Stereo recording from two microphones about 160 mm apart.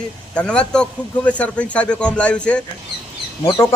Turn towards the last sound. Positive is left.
turn(degrees=20)  # may be behind; listen again after turning